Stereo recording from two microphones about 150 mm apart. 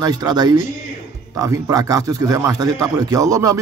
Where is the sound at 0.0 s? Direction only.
25° right (ahead or behind).